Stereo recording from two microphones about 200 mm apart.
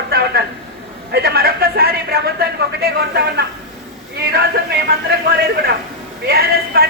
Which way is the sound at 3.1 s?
55° right (ahead or behind).